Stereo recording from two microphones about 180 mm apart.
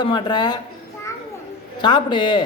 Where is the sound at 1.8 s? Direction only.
25° left (ahead or behind).